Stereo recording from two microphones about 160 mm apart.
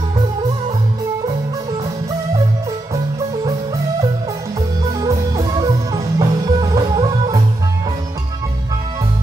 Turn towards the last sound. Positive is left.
turn(degrees=-25)  # may be behind; listen again after turning